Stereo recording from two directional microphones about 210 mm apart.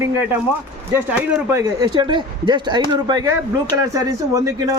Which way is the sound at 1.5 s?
15° right (ahead or behind).